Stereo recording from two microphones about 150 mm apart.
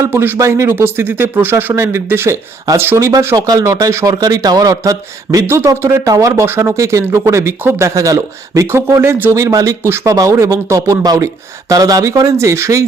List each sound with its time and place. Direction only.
0.0 s speech: 15° right (ahead or behind)